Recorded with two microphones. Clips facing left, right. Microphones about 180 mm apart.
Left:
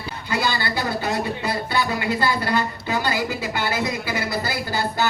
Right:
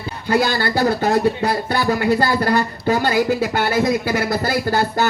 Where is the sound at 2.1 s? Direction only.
40° right (ahead or behind).